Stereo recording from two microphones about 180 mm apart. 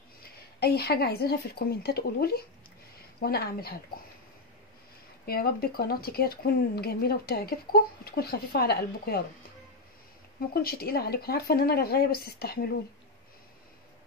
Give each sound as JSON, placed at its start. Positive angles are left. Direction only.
{"t": 0.6, "sound": "speech", "side_deg": 60}
{"t": 5.2, "sound": "speech", "side_deg": 60}
{"t": 10.5, "sound": "speech", "side_deg": 55}